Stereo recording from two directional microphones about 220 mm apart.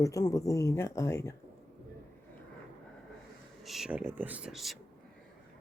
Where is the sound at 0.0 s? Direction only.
15° left (ahead or behind).